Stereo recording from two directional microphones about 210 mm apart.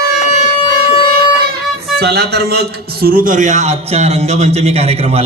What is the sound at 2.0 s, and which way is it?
A man's voice, 50° right (ahead or behind).